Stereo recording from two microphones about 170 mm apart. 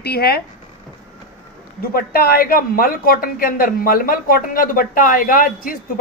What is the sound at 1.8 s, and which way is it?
Speech, 60° left (ahead or behind).